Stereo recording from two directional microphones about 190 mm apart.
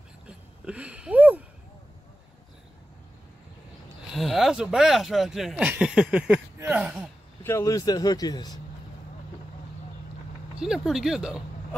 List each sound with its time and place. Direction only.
0.3 s a sound: 5° right (ahead or behind)
4.1 s speech: centre (ahead or behind)
7.4 s a man's voice: 15° left (ahead or behind)
10.6 s speech: centre (ahead or behind)